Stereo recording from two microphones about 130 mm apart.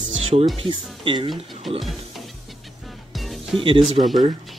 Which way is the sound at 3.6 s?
45° right (ahead or behind).